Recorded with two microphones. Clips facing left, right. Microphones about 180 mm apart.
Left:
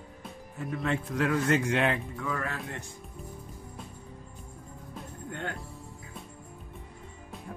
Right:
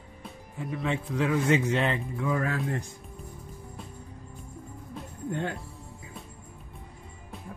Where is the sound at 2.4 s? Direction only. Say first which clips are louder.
Right 7 dB; 40° right (ahead or behind).